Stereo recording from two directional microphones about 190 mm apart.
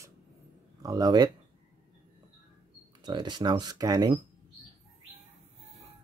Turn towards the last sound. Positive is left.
turn(degrees=-20)  # may be behind; listen again after turning